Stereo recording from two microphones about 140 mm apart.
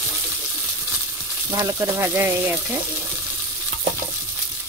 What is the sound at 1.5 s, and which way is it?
Sizzle, 15° right (ahead or behind).